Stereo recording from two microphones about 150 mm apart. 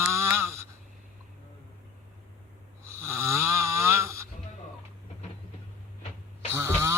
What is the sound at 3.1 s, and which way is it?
Snoring, 15° right (ahead or behind).